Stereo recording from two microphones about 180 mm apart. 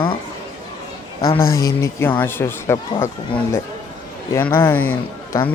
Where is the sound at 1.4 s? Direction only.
55° left (ahead or behind).